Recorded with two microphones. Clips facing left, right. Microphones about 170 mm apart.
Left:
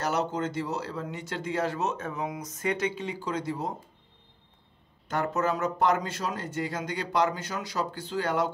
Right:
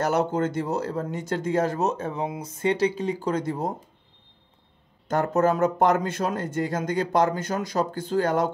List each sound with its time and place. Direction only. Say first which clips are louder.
0.0 s speech: right 5 dB; 55° right (ahead or behind)
5.0 s speech: right 6 dB; 45° right (ahead or behind)